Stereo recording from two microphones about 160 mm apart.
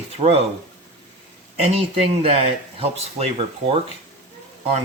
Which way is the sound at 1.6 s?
35° right (ahead or behind).